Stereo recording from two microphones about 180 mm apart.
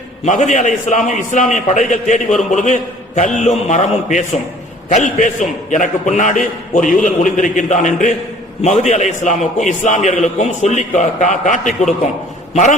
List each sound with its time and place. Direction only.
0.3 s a man's voice: 45° left (ahead or behind)